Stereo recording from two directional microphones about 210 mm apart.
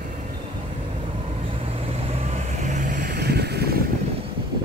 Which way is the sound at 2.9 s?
50° right (ahead or behind).